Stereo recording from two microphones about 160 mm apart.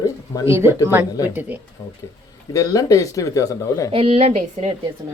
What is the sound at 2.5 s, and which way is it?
Speech, 20° left (ahead or behind).